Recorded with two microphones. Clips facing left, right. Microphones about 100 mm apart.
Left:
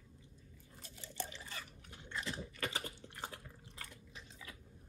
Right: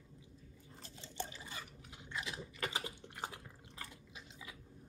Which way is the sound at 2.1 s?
5° right (ahead or behind).